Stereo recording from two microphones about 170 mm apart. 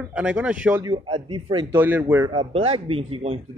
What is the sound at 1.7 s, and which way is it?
Speech, 10° right (ahead or behind).